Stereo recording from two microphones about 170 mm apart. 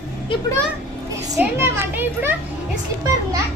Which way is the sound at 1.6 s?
15° right (ahead or behind).